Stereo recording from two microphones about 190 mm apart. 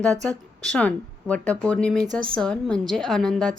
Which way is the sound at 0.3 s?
5° left (ahead or behind).